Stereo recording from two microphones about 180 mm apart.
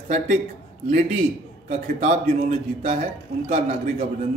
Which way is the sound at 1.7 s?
40° right (ahead or behind).